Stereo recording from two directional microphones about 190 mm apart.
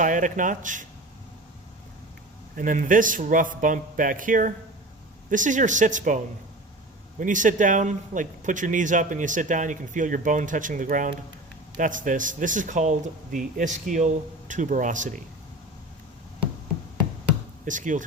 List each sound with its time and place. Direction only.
0.0 s speech: 45° right (ahead or behind)
2.6 s speech: 45° right (ahead or behind)
17.7 s speech: 40° right (ahead or behind)